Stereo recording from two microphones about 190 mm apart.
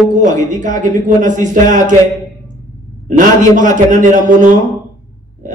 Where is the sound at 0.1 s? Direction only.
40° right (ahead or behind).